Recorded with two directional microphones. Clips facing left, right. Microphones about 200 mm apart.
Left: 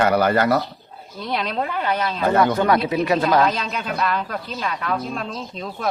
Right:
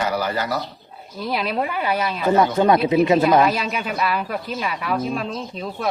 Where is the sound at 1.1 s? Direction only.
5° right (ahead or behind).